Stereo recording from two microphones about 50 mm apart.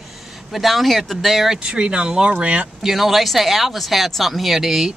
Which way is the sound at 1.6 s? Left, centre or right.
Centre.